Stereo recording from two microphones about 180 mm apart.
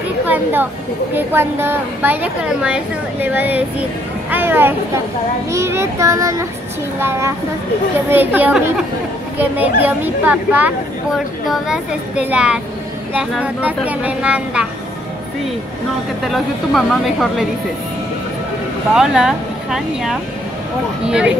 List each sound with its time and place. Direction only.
0.3 s a woman's voice: 10° right (ahead or behind)
16.3 s a woman's voice: centre (ahead or behind)
18.9 s a woman's voice: 5° right (ahead or behind)